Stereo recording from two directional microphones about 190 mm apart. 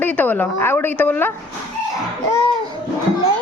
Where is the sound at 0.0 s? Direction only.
10° left (ahead or behind).